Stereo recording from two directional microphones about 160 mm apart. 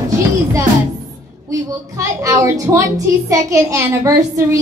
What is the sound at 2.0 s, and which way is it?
A woman's voice, 20° right (ahead or behind).